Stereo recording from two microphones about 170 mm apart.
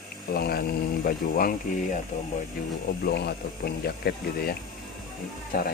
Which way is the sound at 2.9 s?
70° left (ahead or behind).